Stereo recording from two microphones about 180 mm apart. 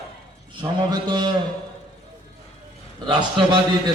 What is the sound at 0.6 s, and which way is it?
Speech, 25° right (ahead or behind).